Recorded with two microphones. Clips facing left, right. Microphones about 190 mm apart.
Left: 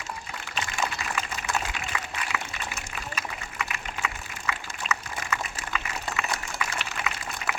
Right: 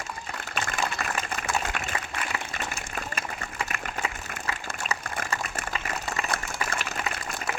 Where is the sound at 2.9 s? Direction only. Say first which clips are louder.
Right 2 dB; 45° right (ahead or behind).